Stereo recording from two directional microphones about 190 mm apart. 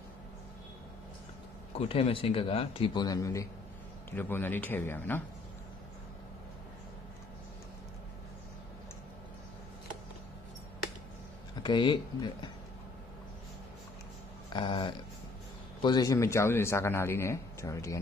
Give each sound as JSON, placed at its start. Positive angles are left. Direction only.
{"t": 1.8, "sound": "speech", "side_deg": 30}
{"t": 11.6, "sound": "speech", "side_deg": 25}
{"t": 14.5, "sound": "speech", "side_deg": 25}